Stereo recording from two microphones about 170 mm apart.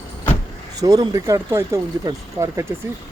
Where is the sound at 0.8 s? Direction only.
20° right (ahead or behind).